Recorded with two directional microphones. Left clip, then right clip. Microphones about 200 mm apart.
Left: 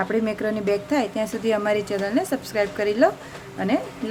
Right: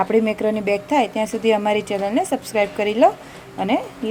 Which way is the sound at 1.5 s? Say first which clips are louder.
Right 3 dB; 5° right (ahead or behind).